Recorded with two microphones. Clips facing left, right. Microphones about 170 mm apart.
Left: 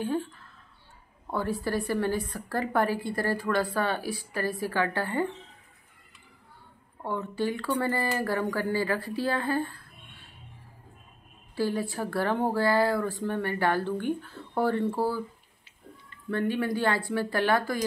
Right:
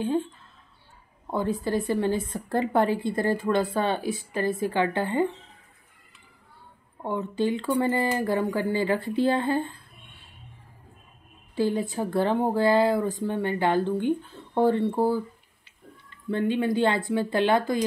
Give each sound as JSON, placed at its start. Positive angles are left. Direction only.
{"t": 0.0, "sound": "a woman's voice", "side_deg": -20}
{"t": 7.0, "sound": "a woman's voice", "side_deg": -20}
{"t": 11.5, "sound": "a woman's voice", "side_deg": -20}
{"t": 16.3, "sound": "a woman's voice", "side_deg": -20}